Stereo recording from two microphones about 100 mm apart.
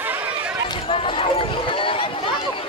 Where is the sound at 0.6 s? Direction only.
45° left (ahead or behind).